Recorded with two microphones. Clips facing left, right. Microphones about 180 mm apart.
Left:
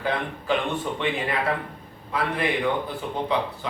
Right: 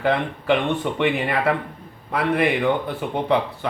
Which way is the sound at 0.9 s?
65° right (ahead or behind).